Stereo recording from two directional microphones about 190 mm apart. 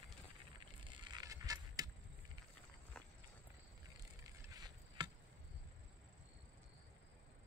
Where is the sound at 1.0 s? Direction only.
20° right (ahead or behind).